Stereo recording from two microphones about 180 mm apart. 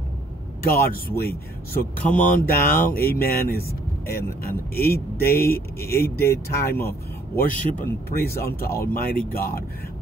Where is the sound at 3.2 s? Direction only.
55° left (ahead or behind).